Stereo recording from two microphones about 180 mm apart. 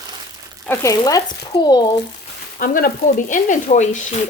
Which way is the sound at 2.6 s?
50° left (ahead or behind).